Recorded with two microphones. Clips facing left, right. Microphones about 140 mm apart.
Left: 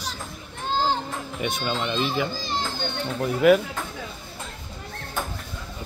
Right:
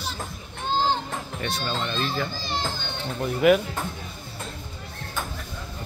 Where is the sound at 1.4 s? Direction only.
15° left (ahead or behind).